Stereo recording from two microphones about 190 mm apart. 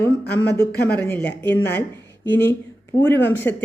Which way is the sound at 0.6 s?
55° left (ahead or behind).